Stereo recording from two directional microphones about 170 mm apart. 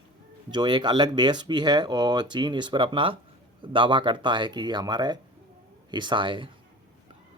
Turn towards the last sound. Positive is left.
turn(degrees=-30)  # may be behind; listen again after turning